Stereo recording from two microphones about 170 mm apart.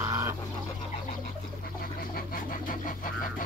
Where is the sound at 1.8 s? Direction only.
60° left (ahead or behind).